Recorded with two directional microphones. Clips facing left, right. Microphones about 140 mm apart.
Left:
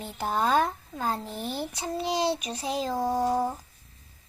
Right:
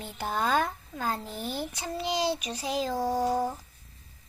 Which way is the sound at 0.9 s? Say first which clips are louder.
Left 2 dB; 20° left (ahead or behind).